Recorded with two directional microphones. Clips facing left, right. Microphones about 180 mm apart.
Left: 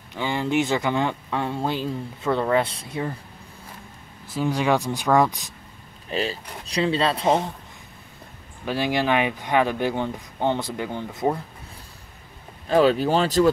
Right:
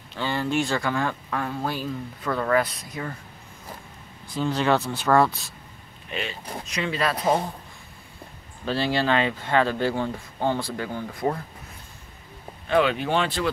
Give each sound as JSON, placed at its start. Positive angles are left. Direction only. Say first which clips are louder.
{"t": 0.1, "sound": "speech", "louder": "left 2 dB", "side_deg": 15}
{"t": 4.3, "sound": "speech", "louder": "left 1 dB", "side_deg": 10}
{"t": 6.0, "sound": "speech", "louder": "left 5 dB", "side_deg": 35}
{"t": 8.6, "sound": "speech", "louder": "left 1 dB", "side_deg": 15}
{"t": 12.6, "sound": "speech", "louder": "left 4 dB", "side_deg": 35}